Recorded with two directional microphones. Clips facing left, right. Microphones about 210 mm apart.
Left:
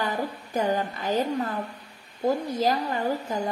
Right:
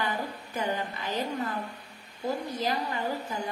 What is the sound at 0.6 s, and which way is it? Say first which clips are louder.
Speech: left 6 dB; 40° left (ahead or behind).